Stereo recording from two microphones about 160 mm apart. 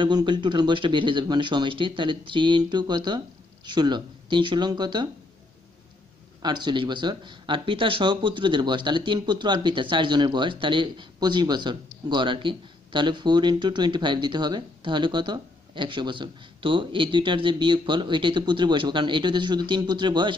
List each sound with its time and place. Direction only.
0.0 s speech: 30° right (ahead or behind)
6.4 s speech: 30° right (ahead or behind)